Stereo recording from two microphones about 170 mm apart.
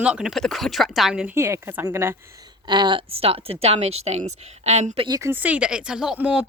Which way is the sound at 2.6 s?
25° right (ahead or behind).